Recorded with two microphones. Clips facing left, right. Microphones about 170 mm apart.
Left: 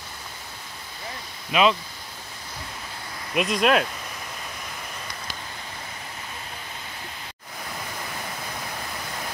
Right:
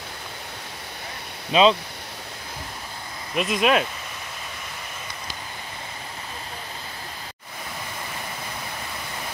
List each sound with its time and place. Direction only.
1.5 s speech: 30° right (ahead or behind)
3.3 s speech: centre (ahead or behind)